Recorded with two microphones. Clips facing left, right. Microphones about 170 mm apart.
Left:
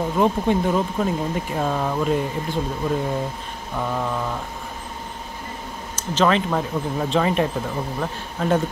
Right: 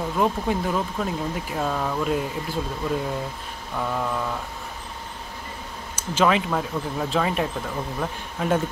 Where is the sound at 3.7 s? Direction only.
5° left (ahead or behind).